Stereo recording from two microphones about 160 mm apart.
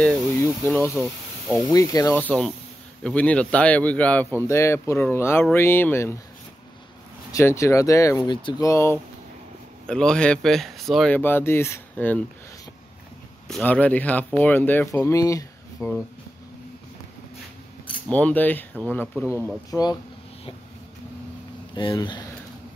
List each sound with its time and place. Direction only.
0.0 s speech: 5° left (ahead or behind)
0.6 s speech: 15° left (ahead or behind)
2.1 s speech: 10° left (ahead or behind)
7.3 s speech: 20° left (ahead or behind)
8.6 s speech: 15° left (ahead or behind)
9.8 s speech: 5° left (ahead or behind)
11.1 s speech: 15° left (ahead or behind)
13.5 s speech: 10° left (ahead or behind)
18.1 s speech: 10° left (ahead or behind)
19.7 s speech: 25° left (ahead or behind)
21.7 s speech: 30° left (ahead or behind)